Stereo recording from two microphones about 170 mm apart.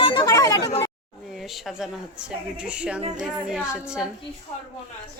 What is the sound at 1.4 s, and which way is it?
A woman's voice, centre (ahead or behind).